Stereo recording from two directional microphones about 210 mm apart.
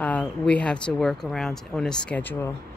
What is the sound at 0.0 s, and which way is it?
A woman's voice, 5° left (ahead or behind).